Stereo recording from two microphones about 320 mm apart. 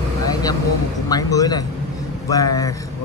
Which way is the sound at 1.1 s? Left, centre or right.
Centre.